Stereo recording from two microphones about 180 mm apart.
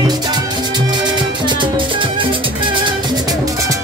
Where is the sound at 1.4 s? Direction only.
25° right (ahead or behind).